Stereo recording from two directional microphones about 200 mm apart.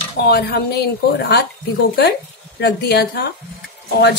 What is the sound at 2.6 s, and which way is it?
Speech, 55° left (ahead or behind).